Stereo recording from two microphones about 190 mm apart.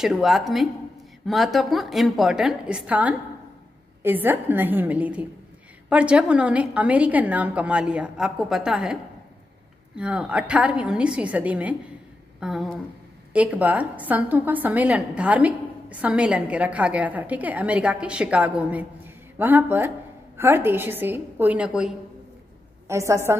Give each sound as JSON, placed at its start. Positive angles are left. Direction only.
{"t": 0.0, "sound": "a woman's voice", "side_deg": 0}
{"t": 9.9, "sound": "a woman's voice", "side_deg": -5}
{"t": 22.8, "sound": "a woman's voice", "side_deg": -15}